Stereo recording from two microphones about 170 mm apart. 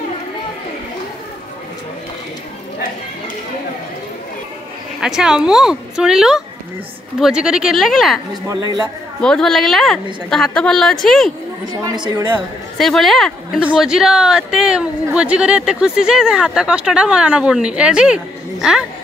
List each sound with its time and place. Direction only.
5.0 s a woman's voice: 5° right (ahead or behind)
8.5 s speech: 25° right (ahead or behind)
9.2 s a woman's voice: 5° left (ahead or behind)
11.7 s speech: 25° right (ahead or behind)
12.7 s a woman's voice: centre (ahead or behind)